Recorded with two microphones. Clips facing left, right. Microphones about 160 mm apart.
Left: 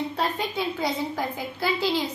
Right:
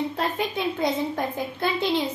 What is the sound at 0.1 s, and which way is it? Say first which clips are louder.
A woman's voice: right 1 dB; 20° right (ahead or behind).